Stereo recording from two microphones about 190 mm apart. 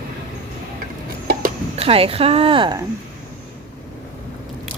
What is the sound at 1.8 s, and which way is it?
Speech, 30° right (ahead or behind).